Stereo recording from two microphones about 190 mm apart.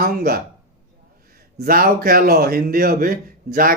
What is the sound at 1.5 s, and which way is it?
Speech, 50° right (ahead or behind).